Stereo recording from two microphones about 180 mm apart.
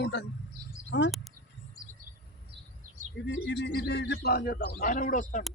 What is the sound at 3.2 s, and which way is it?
A man's voice, 85° left.